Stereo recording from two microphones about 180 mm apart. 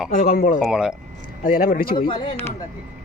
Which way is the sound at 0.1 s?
45° left (ahead or behind).